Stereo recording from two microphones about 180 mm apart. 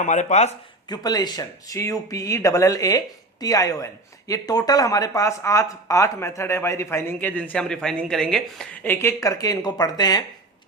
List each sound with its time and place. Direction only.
0.0 s speech: 40° left (ahead or behind)
0.9 s speech: 20° left (ahead or behind)